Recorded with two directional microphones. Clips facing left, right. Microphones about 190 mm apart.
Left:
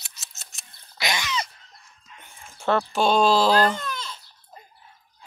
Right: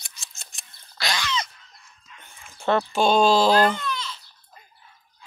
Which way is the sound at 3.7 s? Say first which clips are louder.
Right 2 dB; 45° left (ahead or behind).